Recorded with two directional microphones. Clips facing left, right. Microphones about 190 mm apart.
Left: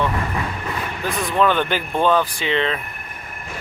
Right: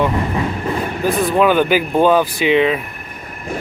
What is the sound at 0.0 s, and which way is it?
Train, 25° right (ahead or behind).